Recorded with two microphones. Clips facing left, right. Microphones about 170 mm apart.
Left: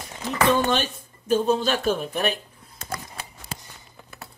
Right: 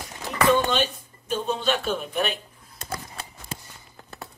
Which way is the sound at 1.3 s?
40° left (ahead or behind).